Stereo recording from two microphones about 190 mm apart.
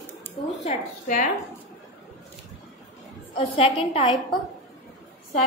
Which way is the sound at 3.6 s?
30° left (ahead or behind).